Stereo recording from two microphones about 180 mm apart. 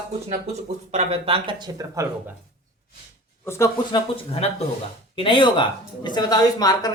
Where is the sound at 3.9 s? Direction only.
35° left (ahead or behind).